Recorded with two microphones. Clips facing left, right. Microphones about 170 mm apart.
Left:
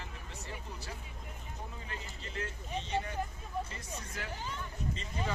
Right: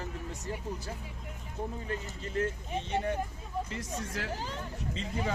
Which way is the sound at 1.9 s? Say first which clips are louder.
Right 8 dB; 45° right (ahead or behind).